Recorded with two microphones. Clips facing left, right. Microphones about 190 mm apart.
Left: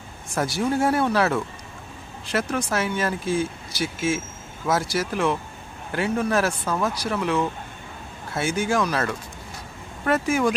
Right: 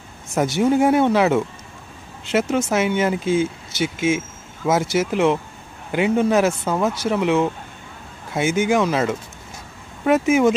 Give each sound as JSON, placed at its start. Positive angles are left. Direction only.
{"t": 0.3, "sound": "speech", "side_deg": -20}